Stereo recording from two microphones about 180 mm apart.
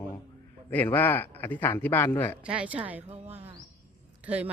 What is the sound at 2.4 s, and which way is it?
Speech, 5° right (ahead or behind).